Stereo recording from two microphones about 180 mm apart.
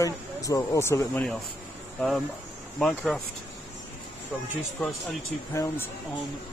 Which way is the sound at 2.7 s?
Centre (ahead or behind).